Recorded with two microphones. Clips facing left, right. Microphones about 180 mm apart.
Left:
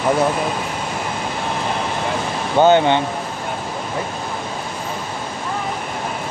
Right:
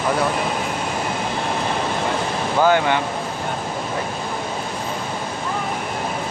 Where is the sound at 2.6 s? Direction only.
25° left (ahead or behind).